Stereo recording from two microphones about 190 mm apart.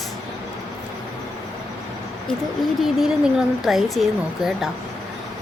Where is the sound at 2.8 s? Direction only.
Centre (ahead or behind).